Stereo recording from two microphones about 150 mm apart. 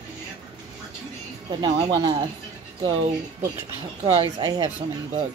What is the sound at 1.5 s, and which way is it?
Speech, 30° right (ahead or behind).